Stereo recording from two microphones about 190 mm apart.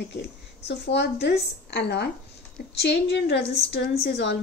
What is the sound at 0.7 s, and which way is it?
A woman's voice, 65° left (ahead or behind).